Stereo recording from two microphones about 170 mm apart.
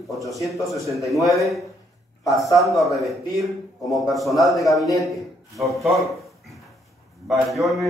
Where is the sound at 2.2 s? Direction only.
20° left (ahead or behind).